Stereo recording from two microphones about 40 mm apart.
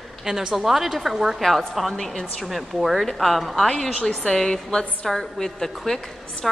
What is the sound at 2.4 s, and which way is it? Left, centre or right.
Speech, centre.